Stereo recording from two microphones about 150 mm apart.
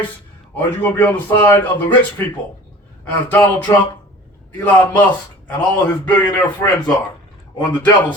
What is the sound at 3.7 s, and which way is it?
Speech, 25° left (ahead or behind).